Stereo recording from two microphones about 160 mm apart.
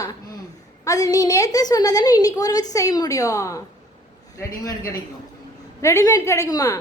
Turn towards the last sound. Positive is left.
turn(degrees=20)  # may be behind; listen again after turning